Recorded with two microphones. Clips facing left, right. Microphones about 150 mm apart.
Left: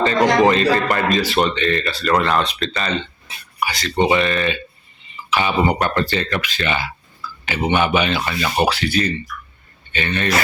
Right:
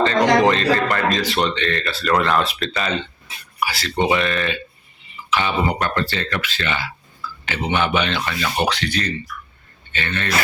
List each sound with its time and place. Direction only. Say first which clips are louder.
0.0 s speech: left 1 dB; 5° left (ahead or behind)
5.3 s speech: left 3 dB; 10° left (ahead or behind)